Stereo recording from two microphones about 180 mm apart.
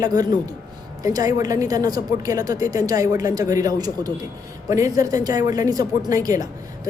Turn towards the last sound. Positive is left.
turn(degrees=-20)  # may be behind; listen again after turning